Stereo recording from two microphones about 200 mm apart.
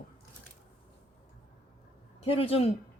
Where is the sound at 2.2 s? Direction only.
30° left (ahead or behind).